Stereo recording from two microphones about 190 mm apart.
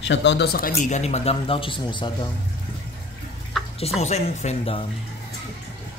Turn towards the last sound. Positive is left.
turn(degrees=30)  # may be behind; listen again after turning